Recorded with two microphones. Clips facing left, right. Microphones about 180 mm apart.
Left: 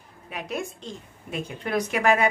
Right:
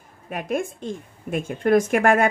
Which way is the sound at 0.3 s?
50° right (ahead or behind).